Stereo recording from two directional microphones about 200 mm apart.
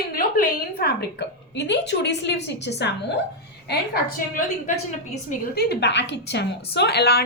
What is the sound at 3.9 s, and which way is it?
A woman's voice, 45° left (ahead or behind).